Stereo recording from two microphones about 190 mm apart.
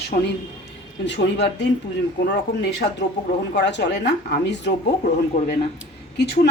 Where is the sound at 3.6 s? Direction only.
65° left (ahead or behind).